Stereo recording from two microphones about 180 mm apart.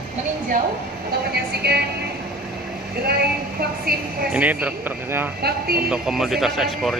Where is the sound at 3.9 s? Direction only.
55° right (ahead or behind).